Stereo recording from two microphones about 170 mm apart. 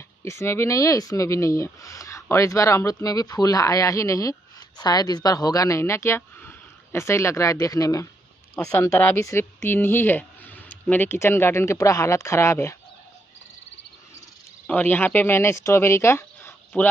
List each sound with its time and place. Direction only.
0.2 s speech: 15° left (ahead or behind)
14.7 s speech: 10° left (ahead or behind)